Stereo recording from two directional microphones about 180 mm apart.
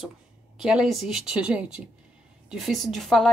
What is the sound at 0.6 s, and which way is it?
A woman's voice, 5° right (ahead or behind).